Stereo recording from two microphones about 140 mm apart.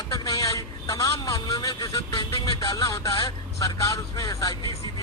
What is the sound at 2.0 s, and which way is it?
A man's voice, 30° left (ahead or behind).